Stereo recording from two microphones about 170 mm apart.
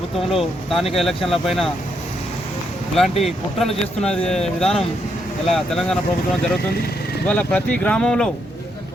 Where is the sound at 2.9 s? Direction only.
Centre (ahead or behind).